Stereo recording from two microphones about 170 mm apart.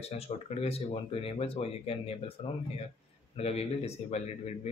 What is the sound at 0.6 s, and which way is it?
Speech, 35° left (ahead or behind).